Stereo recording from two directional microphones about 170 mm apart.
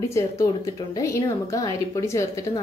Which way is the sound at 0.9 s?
20° left (ahead or behind).